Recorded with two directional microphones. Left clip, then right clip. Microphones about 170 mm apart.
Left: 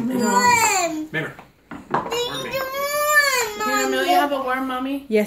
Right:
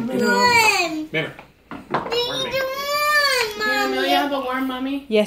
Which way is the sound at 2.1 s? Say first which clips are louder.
Right 2 dB; 5° left (ahead or behind).